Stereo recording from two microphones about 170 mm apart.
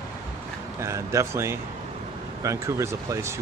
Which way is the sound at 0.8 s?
15° right (ahead or behind).